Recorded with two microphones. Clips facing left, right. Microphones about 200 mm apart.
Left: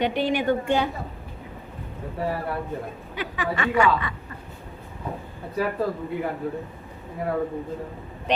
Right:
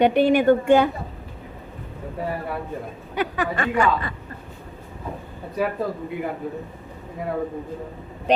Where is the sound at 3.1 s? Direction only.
50° right (ahead or behind).